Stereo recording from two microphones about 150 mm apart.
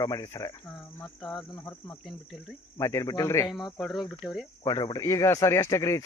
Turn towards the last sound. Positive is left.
turn(degrees=20)  # may be behind; listen again after turning